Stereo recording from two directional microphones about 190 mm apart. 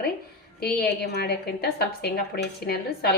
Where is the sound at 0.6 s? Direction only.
55° left (ahead or behind).